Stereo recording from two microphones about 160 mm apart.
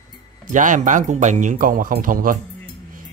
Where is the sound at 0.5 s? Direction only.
55° right (ahead or behind).